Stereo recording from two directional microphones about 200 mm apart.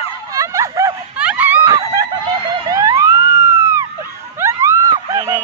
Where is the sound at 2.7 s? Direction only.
15° right (ahead or behind).